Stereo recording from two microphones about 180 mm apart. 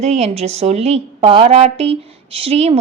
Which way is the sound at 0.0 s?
35° right (ahead or behind).